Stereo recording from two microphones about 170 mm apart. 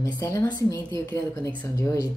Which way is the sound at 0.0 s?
15° left (ahead or behind).